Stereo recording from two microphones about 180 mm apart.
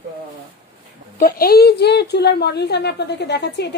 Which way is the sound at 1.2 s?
55° left (ahead or behind).